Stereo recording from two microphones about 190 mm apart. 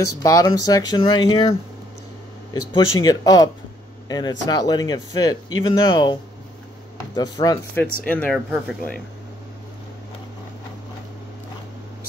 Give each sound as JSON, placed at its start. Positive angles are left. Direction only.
{"t": 0.2, "sound": "speech", "side_deg": 20}
{"t": 7.2, "sound": "speech", "side_deg": 20}
{"t": 8.1, "sound": "speech", "side_deg": 5}